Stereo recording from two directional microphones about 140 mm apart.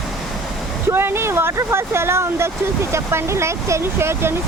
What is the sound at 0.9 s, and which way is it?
Speech, 15° right (ahead or behind).